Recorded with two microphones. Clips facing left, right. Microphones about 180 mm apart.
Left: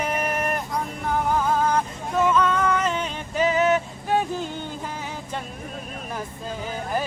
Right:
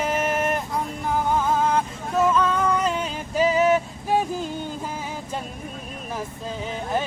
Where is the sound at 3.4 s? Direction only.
5° right (ahead or behind).